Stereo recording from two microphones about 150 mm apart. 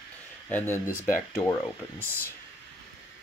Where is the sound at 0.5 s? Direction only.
15° left (ahead or behind).